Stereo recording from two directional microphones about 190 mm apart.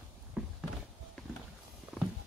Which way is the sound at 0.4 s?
5° right (ahead or behind).